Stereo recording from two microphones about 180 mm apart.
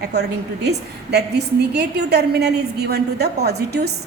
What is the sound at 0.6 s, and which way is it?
A woman's voice, 65° right (ahead or behind).